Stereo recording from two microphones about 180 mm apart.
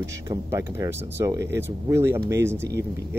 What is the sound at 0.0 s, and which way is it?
Speech, 15° right (ahead or behind).